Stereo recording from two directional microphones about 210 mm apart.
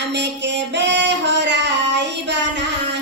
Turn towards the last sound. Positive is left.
turn(degrees=-55)  # may be behind; listen again after turning